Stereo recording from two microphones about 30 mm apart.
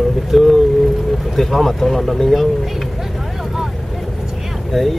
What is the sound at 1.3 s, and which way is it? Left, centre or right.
Speech, centre.